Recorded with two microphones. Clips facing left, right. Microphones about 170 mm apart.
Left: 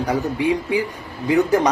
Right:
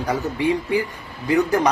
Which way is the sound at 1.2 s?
20° left (ahead or behind).